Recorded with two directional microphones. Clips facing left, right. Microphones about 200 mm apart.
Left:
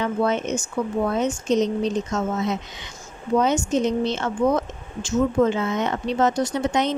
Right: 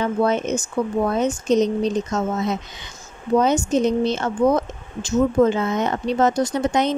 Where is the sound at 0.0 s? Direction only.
40° right (ahead or behind).